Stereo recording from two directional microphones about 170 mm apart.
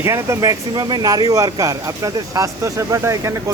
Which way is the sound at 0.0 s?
15° right (ahead or behind).